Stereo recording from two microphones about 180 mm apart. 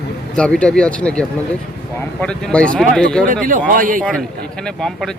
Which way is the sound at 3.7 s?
50° right (ahead or behind).